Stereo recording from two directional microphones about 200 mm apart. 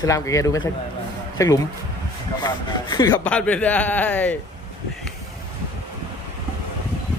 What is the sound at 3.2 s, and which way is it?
Speech, 5° left (ahead or behind).